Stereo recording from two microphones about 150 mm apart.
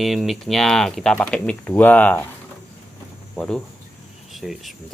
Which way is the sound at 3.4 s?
5° left (ahead or behind).